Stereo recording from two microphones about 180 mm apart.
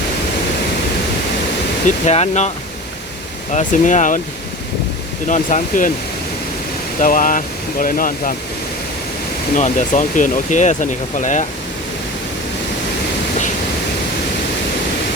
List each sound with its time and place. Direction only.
2.0 s speech: 35° left (ahead or behind)
3.5 s speech: 45° left (ahead or behind)
5.3 s speech: 45° left (ahead or behind)
7.0 s speech: 50° left (ahead or behind)
9.6 s speech: 40° left (ahead or behind)